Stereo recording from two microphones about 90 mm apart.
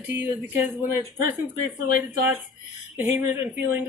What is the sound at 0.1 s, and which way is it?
Speech, 20° right (ahead or behind).